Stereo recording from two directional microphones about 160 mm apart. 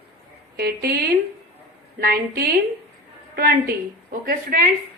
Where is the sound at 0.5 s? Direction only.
80° right.